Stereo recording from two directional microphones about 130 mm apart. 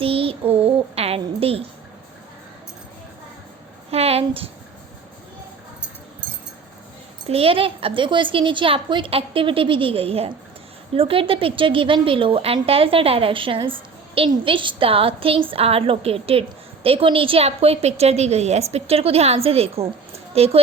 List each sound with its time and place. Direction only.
0.0 s child singing: 45° right (ahead or behind)
3.9 s a sound: 50° right (ahead or behind)
7.3 s a woman's voice: 45° right (ahead or behind)